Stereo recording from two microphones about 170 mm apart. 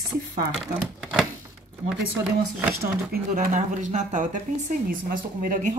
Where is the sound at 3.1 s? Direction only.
45° right (ahead or behind).